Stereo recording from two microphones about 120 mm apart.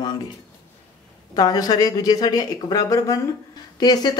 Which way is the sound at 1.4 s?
30° left (ahead or behind).